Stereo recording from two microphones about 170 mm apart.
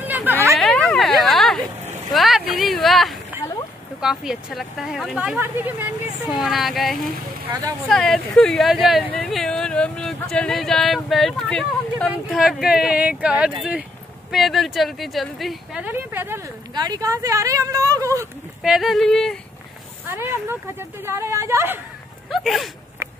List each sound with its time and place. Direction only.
0.0 s a sound: 10° right (ahead or behind)
0.6 s a sound: 5° left (ahead or behind)
4.0 s speech: 5° right (ahead or behind)
16.7 s speech: 25° right (ahead or behind)
18.6 s speech: centre (ahead or behind)
20.1 s speech: 15° right (ahead or behind)
22.3 s speech: centre (ahead or behind)